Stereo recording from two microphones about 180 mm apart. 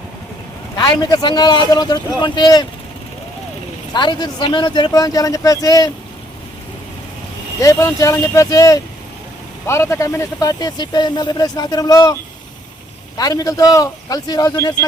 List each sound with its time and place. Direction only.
0.8 s speech: 20° left (ahead or behind)
3.9 s speech: 25° left (ahead or behind)
7.6 s speech: 15° left (ahead or behind)
13.1 s speech: 20° left (ahead or behind)